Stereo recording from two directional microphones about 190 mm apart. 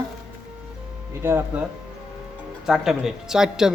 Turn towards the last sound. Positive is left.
turn(degrees=-5)  # may be behind; listen again after turning